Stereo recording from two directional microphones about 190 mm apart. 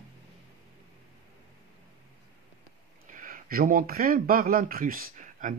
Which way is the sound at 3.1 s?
45° right (ahead or behind).